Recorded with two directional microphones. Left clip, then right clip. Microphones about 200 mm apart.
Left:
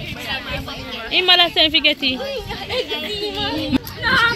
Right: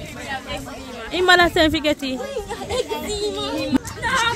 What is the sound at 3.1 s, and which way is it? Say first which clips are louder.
Music: even; 15° right (ahead or behind).